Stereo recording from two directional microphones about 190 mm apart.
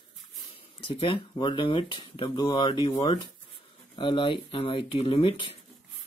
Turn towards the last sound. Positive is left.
turn(degrees=30)  # may be behind; listen again after turning